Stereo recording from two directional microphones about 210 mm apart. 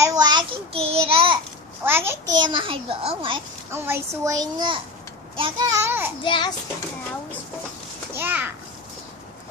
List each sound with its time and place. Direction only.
0.0 s child singing: 20° right (ahead or behind)
1.9 s a child's voice: 10° right (ahead or behind)
3.7 s a child's voice: 10° right (ahead or behind)
6.2 s a child's voice: 25° left (ahead or behind)
8.2 s a child's voice: 10° right (ahead or behind)